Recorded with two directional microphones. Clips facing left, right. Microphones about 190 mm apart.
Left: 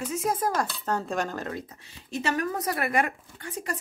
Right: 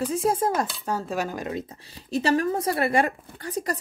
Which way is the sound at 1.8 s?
35° right (ahead or behind).